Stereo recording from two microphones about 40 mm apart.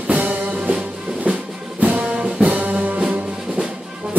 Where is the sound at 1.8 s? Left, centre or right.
Right.